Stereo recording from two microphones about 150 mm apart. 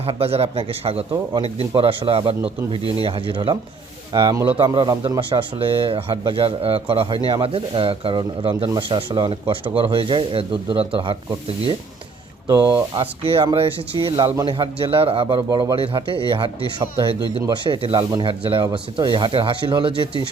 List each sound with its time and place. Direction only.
0.0 s a man's voice: 40° right (ahead or behind)
12.5 s speech: 20° right (ahead or behind)